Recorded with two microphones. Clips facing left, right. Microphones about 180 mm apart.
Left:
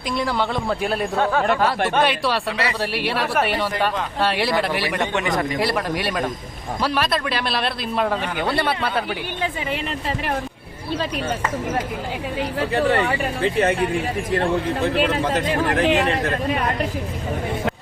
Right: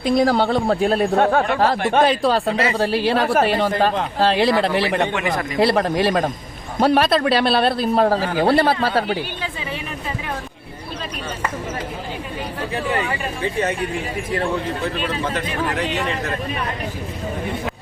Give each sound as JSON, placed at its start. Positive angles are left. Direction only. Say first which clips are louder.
{"t": 0.0, "sound": "a man's voice", "louder": "right 6 dB", "side_deg": -40}
{"t": 1.2, "sound": "speech", "louder": "right 1 dB", "side_deg": -45}
{"t": 1.5, "sound": "a man's voice", "louder": "right 3 dB", "side_deg": -35}
{"t": 12.5, "sound": "speech", "louder": "left 4 dB", "side_deg": 60}
{"t": 15.5, "sound": "speech", "louder": "left 4 dB", "side_deg": 50}